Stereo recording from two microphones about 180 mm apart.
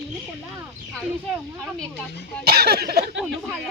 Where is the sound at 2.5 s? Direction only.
60° right (ahead or behind).